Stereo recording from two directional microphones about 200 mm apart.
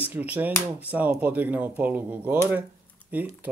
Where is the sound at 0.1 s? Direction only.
10° right (ahead or behind).